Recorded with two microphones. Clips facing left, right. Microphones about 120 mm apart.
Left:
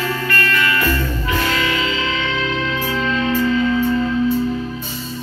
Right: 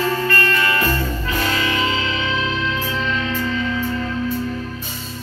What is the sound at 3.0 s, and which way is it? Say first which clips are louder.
Music: left 4 dB; 35° left (ahead or behind).